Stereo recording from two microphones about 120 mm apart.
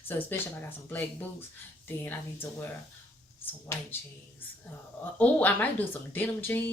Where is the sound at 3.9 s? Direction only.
15° left (ahead or behind).